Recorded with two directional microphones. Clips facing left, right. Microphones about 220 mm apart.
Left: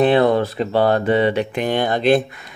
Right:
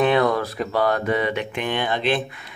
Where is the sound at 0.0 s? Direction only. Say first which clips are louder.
Left 4 dB; 30° left (ahead or behind).